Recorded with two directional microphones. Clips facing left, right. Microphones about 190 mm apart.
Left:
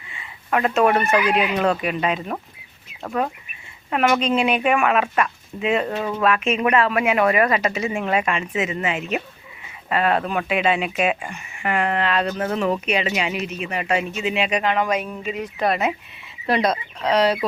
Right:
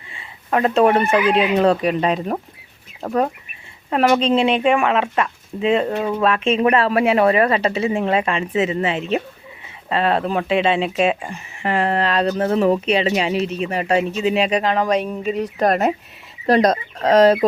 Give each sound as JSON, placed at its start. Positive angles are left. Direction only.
{"t": 0.1, "sound": "speech", "side_deg": -30}
{"t": 3.8, "sound": "speech", "side_deg": -30}
{"t": 5.9, "sound": "speech", "side_deg": -15}
{"t": 6.2, "sound": "speech", "side_deg": -30}